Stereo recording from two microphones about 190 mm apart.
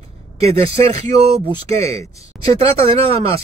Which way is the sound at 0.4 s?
30° right (ahead or behind).